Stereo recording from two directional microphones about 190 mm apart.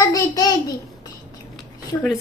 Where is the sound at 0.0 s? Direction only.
20° left (ahead or behind).